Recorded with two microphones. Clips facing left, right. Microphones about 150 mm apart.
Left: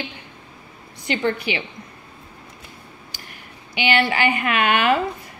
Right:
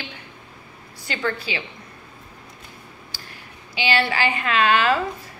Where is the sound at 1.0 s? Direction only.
20° left (ahead or behind).